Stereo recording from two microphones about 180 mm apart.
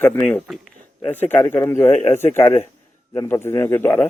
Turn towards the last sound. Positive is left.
turn(degrees=10)  # may be behind; listen again after turning